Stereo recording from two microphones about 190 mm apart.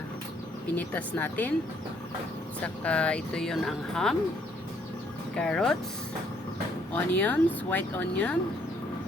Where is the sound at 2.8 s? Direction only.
5° left (ahead or behind).